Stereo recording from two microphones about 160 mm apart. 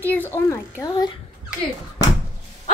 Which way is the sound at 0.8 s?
25° left (ahead or behind).